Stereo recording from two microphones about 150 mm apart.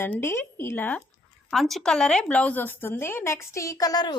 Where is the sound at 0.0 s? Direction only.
15° left (ahead or behind).